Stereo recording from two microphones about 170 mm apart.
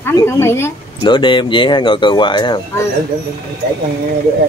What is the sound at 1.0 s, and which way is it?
Speech, 30° left (ahead or behind).